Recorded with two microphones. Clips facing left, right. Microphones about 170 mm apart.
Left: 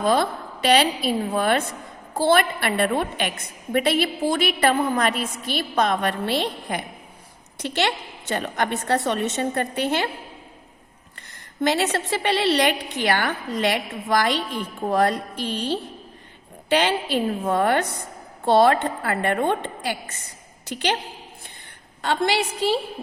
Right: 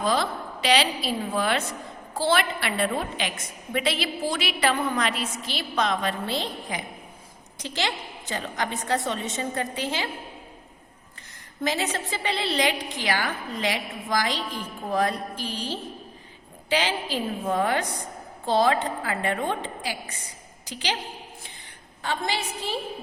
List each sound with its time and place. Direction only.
0.0 s a woman's voice: 55° left (ahead or behind)
11.6 s a woman's voice: 70° left (ahead or behind)
22.0 s a woman's voice: 75° left (ahead or behind)